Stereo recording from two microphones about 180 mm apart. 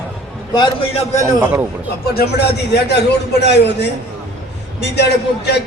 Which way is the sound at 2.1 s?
60° left (ahead or behind).